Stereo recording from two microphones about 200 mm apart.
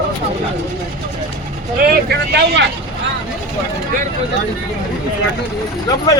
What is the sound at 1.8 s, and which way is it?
Speech, 55° right (ahead or behind).